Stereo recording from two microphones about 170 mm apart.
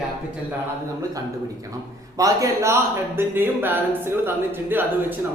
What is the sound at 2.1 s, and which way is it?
A man's voice, 20° right (ahead or behind).